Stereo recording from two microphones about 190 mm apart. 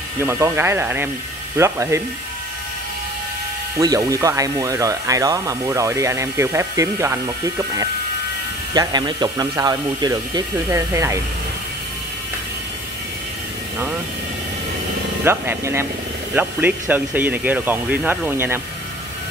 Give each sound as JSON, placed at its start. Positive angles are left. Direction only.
{"t": 0.2, "sound": "speech", "side_deg": -15}
{"t": 3.7, "sound": "speech", "side_deg": -15}
{"t": 15.2, "sound": "speech", "side_deg": -15}